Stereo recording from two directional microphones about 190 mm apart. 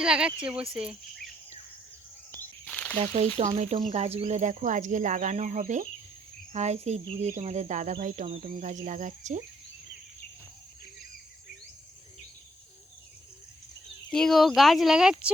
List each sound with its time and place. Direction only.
0.0 s speech: 5° right (ahead or behind)
2.6 s a sound: 5° left (ahead or behind)
3.0 s speech: 35° right (ahead or behind)
14.1 s speech: centre (ahead or behind)